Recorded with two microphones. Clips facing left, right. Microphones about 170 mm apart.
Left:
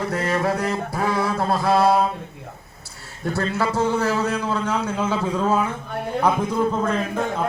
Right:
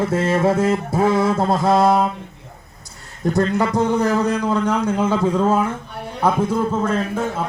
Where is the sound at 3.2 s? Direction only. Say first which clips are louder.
Right 5 dB; 15° right (ahead or behind).